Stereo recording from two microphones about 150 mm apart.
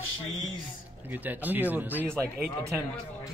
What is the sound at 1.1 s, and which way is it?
A man's voice, 10° right (ahead or behind).